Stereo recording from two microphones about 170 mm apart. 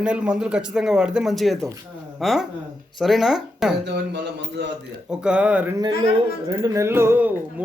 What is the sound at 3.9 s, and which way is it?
Speech, 85° right.